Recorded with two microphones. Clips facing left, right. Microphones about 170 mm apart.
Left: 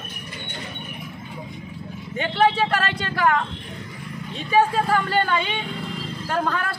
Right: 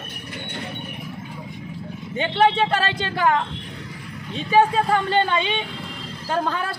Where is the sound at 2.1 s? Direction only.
25° right (ahead or behind).